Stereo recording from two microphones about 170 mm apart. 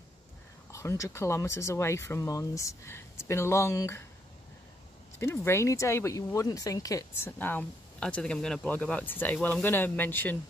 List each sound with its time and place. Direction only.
0.7 s speech: 15° left (ahead or behind)
5.2 s speech: 15° left (ahead or behind)